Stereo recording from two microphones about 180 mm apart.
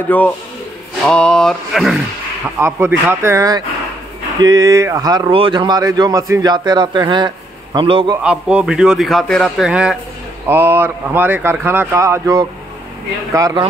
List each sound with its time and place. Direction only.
0.1 s a man's voice: 10° left (ahead or behind)
2.6 s speech: 15° right (ahead or behind)
8.2 s a man's voice: 5° right (ahead or behind)